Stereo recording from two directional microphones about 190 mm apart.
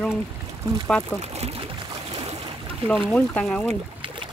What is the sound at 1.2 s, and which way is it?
Speech, 35° right (ahead or behind).